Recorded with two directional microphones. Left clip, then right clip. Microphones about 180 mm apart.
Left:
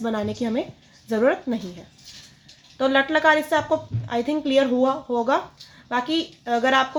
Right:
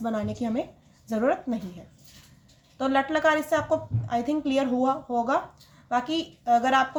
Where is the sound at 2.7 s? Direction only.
35° left (ahead or behind).